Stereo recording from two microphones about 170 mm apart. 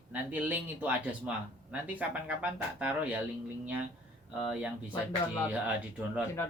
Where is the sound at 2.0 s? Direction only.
10° right (ahead or behind).